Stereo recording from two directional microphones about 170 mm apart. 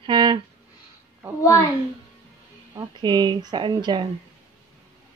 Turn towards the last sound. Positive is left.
turn(degrees=-25)  # may be behind; listen again after turning